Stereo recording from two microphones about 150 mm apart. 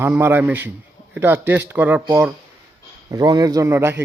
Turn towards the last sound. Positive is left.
turn(degrees=-15)  # may be behind; listen again after turning